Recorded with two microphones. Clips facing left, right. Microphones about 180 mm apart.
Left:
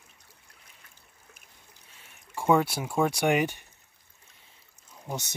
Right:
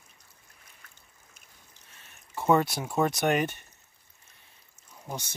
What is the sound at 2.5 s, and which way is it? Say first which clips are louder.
Speech: even; 10° left (ahead or behind).